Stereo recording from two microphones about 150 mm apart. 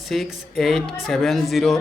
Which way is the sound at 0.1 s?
Centre (ahead or behind).